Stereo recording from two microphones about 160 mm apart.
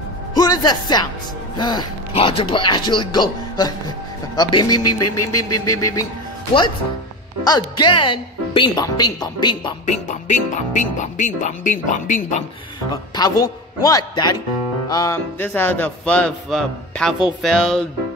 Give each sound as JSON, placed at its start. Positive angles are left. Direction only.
{"t": 0.3, "sound": "music", "side_deg": 25}
{"t": 1.6, "sound": "a woman's voice", "side_deg": 25}
{"t": 7.4, "sound": "a woman's voice", "side_deg": 25}
{"t": 9.8, "sound": "speech", "side_deg": 50}
{"t": 12.9, "sound": "a woman's voice", "side_deg": 25}
{"t": 14.9, "sound": "music", "side_deg": 20}